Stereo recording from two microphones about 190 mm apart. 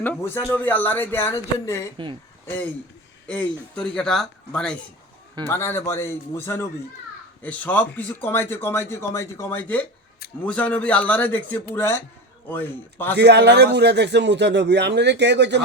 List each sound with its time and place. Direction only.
0.0 s speech: 10° left (ahead or behind)
3.2 s speech: 5° left (ahead or behind)
13.1 s a man's voice: 60° right (ahead or behind)